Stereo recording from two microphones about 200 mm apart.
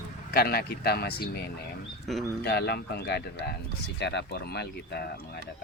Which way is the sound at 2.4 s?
55° left (ahead or behind).